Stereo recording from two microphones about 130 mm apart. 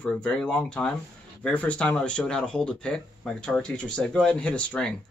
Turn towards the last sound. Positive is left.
turn(degrees=10)  # may be behind; listen again after turning